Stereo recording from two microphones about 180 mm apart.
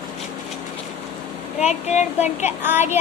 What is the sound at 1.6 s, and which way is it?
Speech, 40° left (ahead or behind).